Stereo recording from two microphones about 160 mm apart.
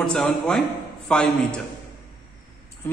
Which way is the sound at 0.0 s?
5° left (ahead or behind).